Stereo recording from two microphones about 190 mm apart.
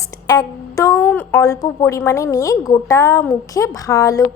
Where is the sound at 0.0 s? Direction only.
20° left (ahead or behind).